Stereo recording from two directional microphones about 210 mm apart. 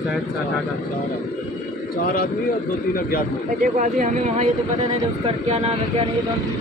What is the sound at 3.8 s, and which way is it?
Speech, 35° right (ahead or behind).